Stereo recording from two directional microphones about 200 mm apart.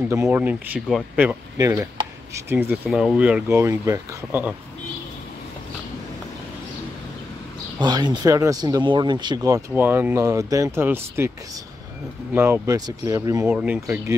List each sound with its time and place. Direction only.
0.1 s speech: 10° right (ahead or behind)
1.6 s speech: 15° right (ahead or behind)
2.9 s speech: centre (ahead or behind)
7.8 s speech: 20° right (ahead or behind)
12.4 s speech: 10° right (ahead or behind)